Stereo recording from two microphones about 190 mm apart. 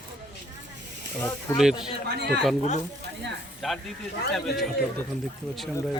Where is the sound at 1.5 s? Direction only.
15° left (ahead or behind).